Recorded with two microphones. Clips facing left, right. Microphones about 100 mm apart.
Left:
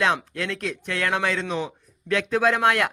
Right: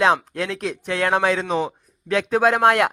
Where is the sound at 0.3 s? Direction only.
45° right (ahead or behind).